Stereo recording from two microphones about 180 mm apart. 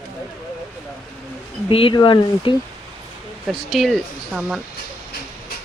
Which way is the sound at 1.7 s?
25° left (ahead or behind).